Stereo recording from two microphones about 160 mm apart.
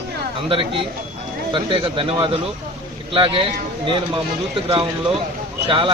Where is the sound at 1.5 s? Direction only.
30° right (ahead or behind).